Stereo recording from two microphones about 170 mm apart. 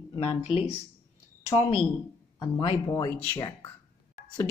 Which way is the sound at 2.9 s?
15° left (ahead or behind).